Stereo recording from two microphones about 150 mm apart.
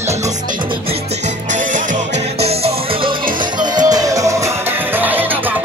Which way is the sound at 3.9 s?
25° right (ahead or behind).